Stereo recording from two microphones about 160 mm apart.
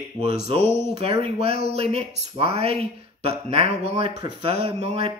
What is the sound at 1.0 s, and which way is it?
Speech, 40° right (ahead or behind).